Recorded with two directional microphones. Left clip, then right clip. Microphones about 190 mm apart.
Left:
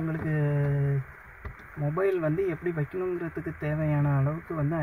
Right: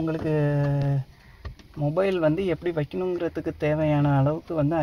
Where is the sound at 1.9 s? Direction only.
45° right (ahead or behind).